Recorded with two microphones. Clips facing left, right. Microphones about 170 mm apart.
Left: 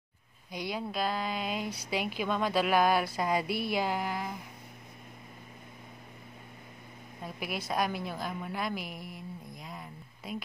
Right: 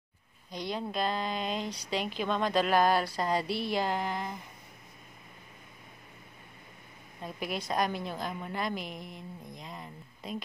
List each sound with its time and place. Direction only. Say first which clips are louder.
0.5 s speech: even; 10° left (ahead or behind)
7.2 s speech: right 1 dB; 10° left (ahead or behind)